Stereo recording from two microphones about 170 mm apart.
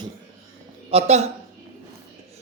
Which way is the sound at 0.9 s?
40° right (ahead or behind).